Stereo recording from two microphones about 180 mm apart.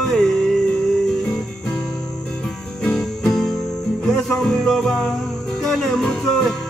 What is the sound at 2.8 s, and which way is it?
Music, 5° left (ahead or behind).